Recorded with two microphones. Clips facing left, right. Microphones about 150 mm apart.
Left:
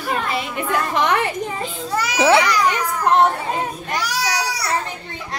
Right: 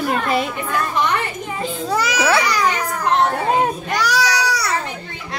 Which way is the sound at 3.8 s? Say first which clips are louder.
Right 4 dB; 80° right.